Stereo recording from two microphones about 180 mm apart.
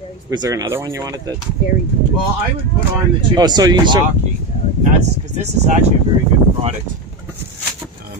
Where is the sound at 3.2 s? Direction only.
25° right (ahead or behind).